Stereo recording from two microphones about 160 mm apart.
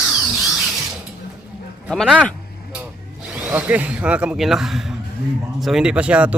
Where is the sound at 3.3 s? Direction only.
10° right (ahead or behind).